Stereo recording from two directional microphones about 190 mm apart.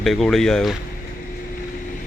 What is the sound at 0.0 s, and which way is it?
Speech, centre (ahead or behind).